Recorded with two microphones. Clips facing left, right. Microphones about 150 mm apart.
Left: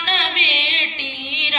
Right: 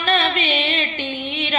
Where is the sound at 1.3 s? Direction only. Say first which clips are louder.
Right 6 dB; 45° right (ahead or behind).